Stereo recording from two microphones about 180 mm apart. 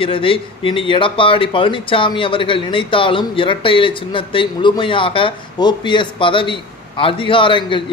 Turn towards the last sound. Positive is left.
turn(degrees=30)  # may be behind; listen again after turning